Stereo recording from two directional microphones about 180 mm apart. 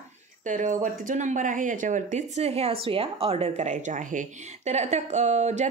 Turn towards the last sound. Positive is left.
turn(degrees=-40)  # may be behind; listen again after turning